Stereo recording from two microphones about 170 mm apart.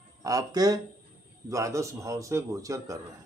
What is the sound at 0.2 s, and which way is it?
Speech, 20° right (ahead or behind).